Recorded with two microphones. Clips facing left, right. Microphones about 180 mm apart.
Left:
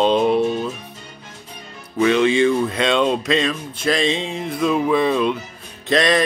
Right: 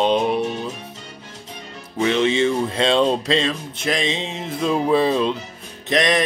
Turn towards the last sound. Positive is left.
turn(degrees=-20)  # may be behind; listen again after turning